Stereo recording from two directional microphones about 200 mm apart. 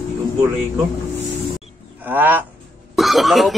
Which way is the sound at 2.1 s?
10° right (ahead or behind).